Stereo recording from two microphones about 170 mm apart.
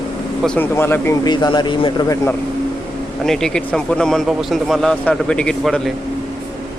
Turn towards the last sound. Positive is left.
turn(degrees=0)  # may be behind; listen again after turning